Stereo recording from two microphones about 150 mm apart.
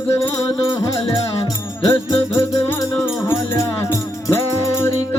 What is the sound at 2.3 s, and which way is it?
Music, 20° left (ahead or behind).